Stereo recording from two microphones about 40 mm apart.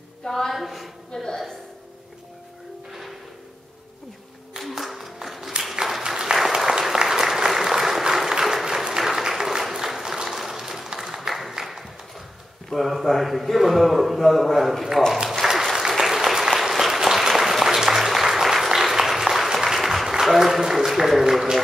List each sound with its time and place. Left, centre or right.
0.2 s a woman's voice: centre
0.5 s a man's voice: centre
1.1 s a woman's voice: centre
2.9 s music: centre
4.6 s a sound: centre
6.3 s applause: centre
11.2 s a sound: centre
12.6 s a man's voice: centre
15.4 s applause: centre
20.3 s speech: centre